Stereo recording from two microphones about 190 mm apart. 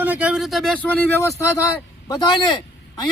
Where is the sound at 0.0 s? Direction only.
10° right (ahead or behind).